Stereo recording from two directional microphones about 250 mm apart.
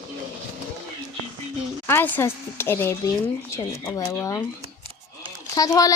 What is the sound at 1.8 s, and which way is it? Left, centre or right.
Speech, centre.